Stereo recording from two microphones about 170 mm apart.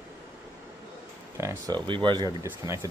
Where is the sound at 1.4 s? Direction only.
20° right (ahead or behind).